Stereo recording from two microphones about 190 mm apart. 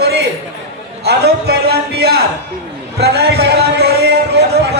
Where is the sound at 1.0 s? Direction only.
60° right (ahead or behind).